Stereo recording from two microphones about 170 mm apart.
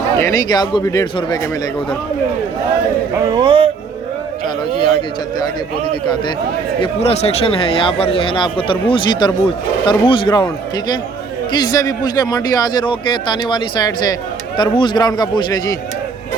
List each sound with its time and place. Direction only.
0.2 s a man's voice: 20° left (ahead or behind)
3.2 s speech: 25° right (ahead or behind)
5.9 s a man's voice: 25° left (ahead or behind)
6.8 s a man's voice: 35° left (ahead or behind)